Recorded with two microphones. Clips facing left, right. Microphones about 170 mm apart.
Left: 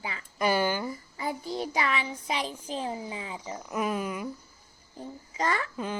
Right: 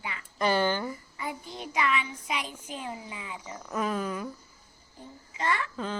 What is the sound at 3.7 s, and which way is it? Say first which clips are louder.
Speech: even; 10° left (ahead or behind).